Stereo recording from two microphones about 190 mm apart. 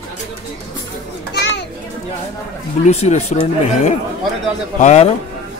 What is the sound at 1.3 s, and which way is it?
Children playing, 65° left (ahead or behind).